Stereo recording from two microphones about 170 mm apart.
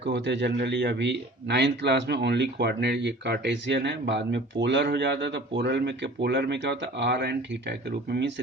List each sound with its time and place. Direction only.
0.0 s a man's voice: 90° right